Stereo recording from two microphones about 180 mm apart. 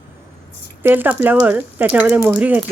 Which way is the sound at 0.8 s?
10° right (ahead or behind).